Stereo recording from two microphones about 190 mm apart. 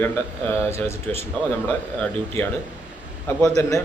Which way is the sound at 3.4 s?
15° left (ahead or behind).